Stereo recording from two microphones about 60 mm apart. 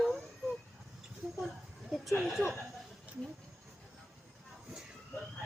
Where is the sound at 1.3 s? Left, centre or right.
Centre.